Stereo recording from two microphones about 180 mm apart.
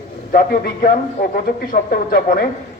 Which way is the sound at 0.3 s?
55° left (ahead or behind).